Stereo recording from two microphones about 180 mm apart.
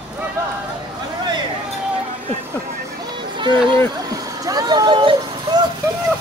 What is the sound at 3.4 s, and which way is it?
Speech, 25° right (ahead or behind).